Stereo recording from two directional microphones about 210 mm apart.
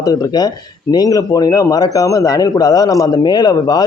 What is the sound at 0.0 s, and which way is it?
Speech, 20° left (ahead or behind).